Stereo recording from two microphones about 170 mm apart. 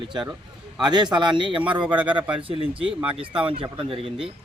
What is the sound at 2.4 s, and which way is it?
Speech, 30° right (ahead or behind).